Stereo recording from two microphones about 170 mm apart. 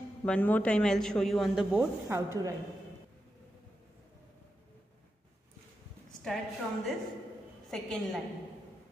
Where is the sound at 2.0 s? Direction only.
15° right (ahead or behind).